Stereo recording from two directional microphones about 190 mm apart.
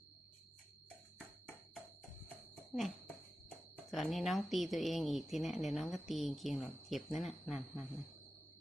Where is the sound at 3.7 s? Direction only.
Centre (ahead or behind).